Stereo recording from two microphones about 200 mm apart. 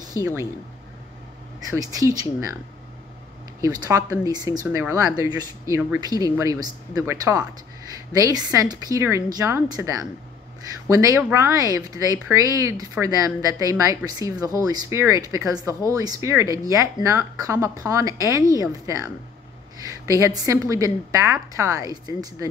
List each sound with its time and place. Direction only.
0.2 s speech: 15° right (ahead or behind)
1.8 s speech: 15° right (ahead or behind)
3.6 s speech: 15° right (ahead or behind)